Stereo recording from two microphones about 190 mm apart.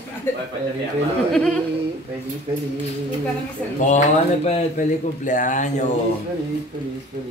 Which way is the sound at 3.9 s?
35° left (ahead or behind).